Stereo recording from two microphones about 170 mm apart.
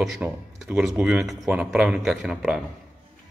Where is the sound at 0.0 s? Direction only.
Centre (ahead or behind).